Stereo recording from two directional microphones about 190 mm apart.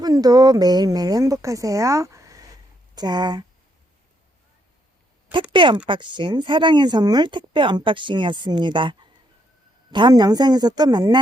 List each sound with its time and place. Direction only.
0.0 s speech: 20° right (ahead or behind)
5.3 s speech: 25° right (ahead or behind)